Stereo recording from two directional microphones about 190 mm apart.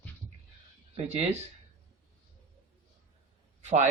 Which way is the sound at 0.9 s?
35° right (ahead or behind).